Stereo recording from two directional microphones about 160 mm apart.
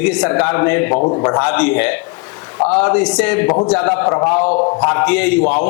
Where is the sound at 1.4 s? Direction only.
10° left (ahead or behind).